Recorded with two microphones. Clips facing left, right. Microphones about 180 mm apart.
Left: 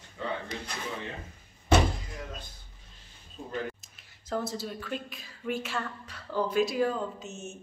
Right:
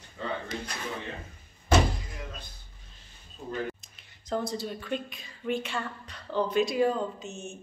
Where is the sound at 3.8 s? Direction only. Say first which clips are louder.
Right 1 dB; 5° left (ahead or behind).